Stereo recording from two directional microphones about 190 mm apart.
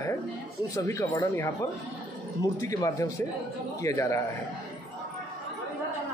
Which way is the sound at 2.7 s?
15° left (ahead or behind).